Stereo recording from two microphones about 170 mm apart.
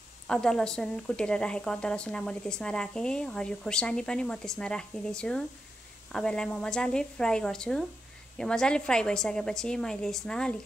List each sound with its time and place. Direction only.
0.3 s a woman's voice: 5° left (ahead or behind)